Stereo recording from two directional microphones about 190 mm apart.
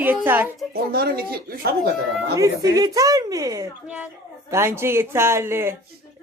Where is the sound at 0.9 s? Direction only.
55° right (ahead or behind).